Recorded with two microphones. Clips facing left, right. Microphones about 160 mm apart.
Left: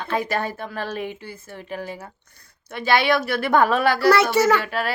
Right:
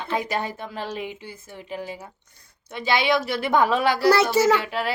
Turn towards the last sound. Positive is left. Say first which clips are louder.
# left 1 dB
turn(degrees=-20)  # may be behind; listen again after turning